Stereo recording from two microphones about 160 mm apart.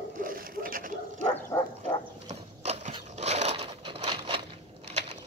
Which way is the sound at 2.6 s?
45° right (ahead or behind).